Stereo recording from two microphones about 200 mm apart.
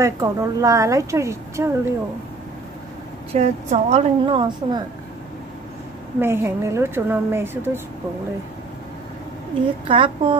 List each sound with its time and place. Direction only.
0.0 s a woman's voice: 15° right (ahead or behind)
3.3 s a woman's voice: 35° right (ahead or behind)
6.1 s a woman's voice: 10° right (ahead or behind)
9.8 s a woman's voice: 25° right (ahead or behind)